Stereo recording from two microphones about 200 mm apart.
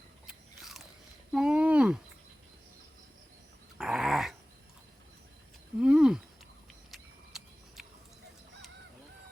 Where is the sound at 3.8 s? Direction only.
5° right (ahead or behind).